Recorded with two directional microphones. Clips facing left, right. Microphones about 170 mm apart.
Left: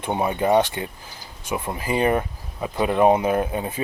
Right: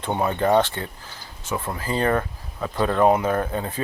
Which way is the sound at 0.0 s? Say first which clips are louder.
Even; 15° left (ahead or behind).